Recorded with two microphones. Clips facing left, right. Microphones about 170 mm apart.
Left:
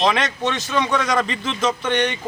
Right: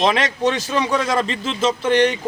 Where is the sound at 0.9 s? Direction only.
30° right (ahead or behind).